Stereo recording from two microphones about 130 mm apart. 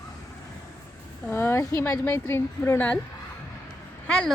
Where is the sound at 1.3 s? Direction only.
20° left (ahead or behind).